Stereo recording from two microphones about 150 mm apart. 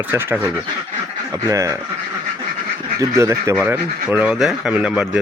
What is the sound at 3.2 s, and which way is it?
Speech, 20° right (ahead or behind).